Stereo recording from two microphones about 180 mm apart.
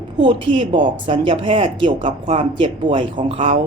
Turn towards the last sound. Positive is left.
turn(degrees=-30)  # may be behind; listen again after turning